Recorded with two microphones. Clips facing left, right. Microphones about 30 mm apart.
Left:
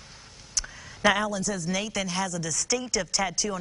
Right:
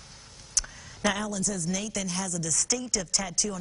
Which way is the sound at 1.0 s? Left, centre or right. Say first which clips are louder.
Left 5 dB; left.